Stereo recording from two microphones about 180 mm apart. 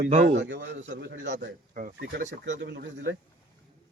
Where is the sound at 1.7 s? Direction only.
45° right (ahead or behind).